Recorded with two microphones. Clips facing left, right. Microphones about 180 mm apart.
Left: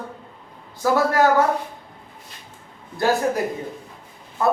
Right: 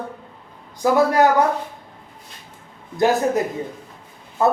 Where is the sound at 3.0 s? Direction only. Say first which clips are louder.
Right 3 dB; 20° right (ahead or behind).